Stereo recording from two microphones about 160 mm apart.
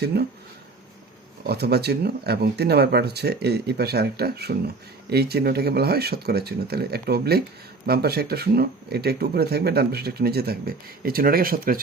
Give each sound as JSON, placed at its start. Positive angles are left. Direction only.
{"t": 1.5, "sound": "speech", "side_deg": -90}